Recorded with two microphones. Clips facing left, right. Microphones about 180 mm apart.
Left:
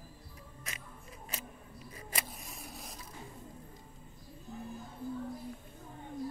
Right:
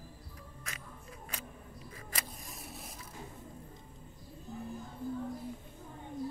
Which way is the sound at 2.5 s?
Centre (ahead or behind).